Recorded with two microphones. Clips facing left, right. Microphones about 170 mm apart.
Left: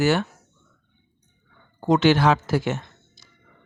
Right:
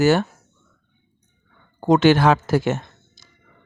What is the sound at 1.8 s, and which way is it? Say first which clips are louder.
Speech: right 3 dB; 45° right (ahead or behind).